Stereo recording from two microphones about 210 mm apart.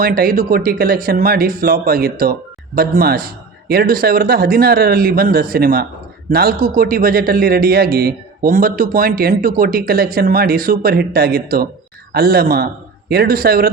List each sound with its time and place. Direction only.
0.0 s speech: 45° right (ahead or behind)